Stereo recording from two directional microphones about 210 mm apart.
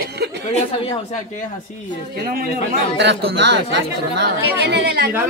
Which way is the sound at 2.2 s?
45° right (ahead or behind).